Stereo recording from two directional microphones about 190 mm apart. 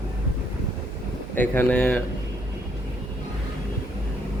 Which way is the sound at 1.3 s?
10° left (ahead or behind).